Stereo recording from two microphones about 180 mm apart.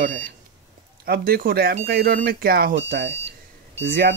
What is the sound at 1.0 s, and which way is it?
Speech, 55° right (ahead or behind).